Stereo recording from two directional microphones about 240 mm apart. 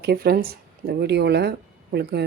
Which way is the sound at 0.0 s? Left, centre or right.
Right.